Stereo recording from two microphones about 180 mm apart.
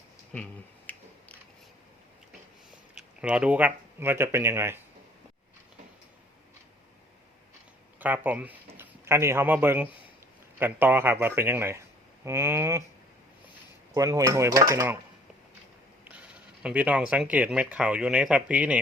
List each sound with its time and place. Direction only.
0.9 s a sound: 10° left (ahead or behind)
2.9 s speech: 5° right (ahead or behind)
7.9 s speech: 10° right (ahead or behind)
13.9 s speech: 20° right (ahead or behind)
16.0 s speech: 5° right (ahead or behind)